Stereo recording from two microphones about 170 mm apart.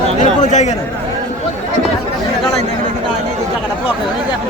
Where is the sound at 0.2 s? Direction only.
45° left (ahead or behind).